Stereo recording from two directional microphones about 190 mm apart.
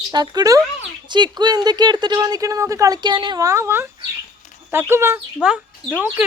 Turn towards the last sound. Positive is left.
turn(degrees=-10)  # may be behind; listen again after turning